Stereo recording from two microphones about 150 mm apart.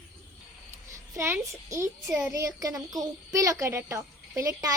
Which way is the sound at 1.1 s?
20° right (ahead or behind).